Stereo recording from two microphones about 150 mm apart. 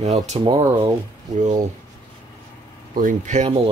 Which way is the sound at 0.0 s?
50° right (ahead or behind).